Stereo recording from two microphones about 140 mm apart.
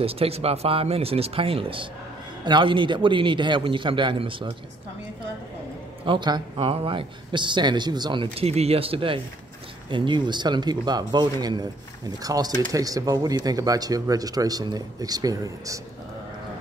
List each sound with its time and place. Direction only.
0.0 s speech: 45° right (ahead or behind)
6.0 s speech: 35° right (ahead or behind)